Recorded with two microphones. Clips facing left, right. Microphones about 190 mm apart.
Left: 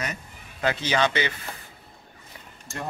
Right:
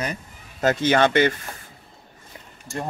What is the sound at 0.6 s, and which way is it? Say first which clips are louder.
Speech: right 5 dB; 50° right (ahead or behind).